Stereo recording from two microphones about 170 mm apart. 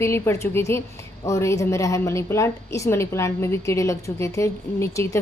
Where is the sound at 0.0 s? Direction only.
15° left (ahead or behind).